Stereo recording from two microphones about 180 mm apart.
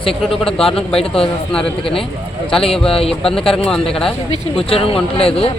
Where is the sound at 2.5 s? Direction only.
30° left (ahead or behind).